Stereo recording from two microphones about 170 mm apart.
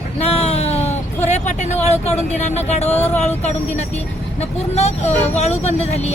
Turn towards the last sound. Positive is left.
turn(degrees=40)  # may be behind; listen again after turning